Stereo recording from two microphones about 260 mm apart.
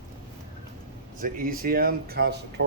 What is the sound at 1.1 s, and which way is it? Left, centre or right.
Speech, right.